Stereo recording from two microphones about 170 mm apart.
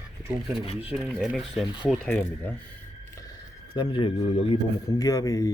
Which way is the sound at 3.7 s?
30° left (ahead or behind).